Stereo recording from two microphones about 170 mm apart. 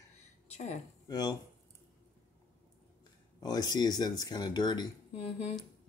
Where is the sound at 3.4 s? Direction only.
25° left (ahead or behind).